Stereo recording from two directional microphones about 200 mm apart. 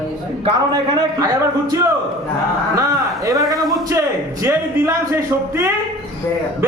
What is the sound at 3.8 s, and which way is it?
Speech, 15° right (ahead or behind).